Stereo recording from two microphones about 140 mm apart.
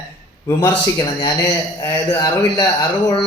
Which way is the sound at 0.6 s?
35° left (ahead or behind).